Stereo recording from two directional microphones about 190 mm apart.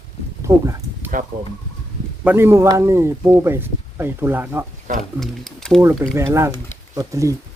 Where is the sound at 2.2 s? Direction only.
10° right (ahead or behind).